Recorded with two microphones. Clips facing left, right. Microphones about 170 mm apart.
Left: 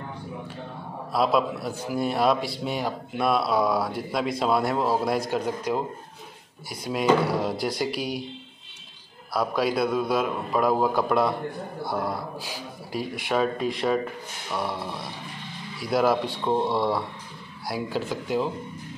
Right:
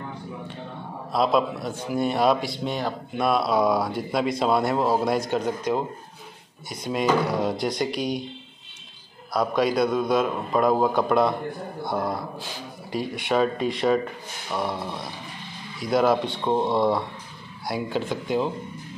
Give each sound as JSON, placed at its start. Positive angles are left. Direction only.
{"t": 1.1, "sound": "a man's voice", "side_deg": 5}
{"t": 9.3, "sound": "a man's voice", "side_deg": 5}